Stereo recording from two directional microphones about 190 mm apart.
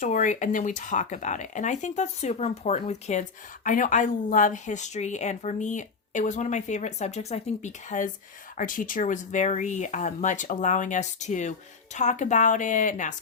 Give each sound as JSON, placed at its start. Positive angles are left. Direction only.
{"t": 0.0, "sound": "speech", "side_deg": 40}